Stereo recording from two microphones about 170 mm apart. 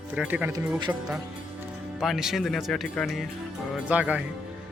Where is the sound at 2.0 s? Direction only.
Centre (ahead or behind).